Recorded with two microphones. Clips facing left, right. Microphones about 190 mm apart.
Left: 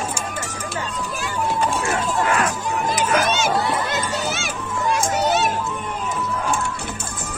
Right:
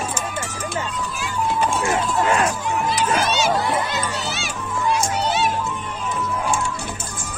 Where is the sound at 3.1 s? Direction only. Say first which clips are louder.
Left 2 dB; 50° left (ahead or behind).